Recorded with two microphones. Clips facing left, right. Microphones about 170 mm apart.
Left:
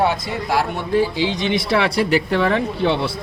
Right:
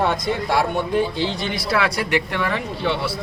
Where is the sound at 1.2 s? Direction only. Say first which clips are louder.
Left 5 dB; 20° left (ahead or behind).